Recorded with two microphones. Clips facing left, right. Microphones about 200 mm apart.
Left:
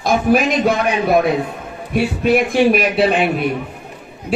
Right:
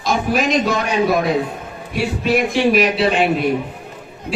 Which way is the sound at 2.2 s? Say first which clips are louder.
Left 2 dB; 55° left (ahead or behind).